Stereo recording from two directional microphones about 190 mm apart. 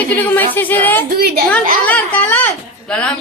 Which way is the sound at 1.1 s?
55° right (ahead or behind).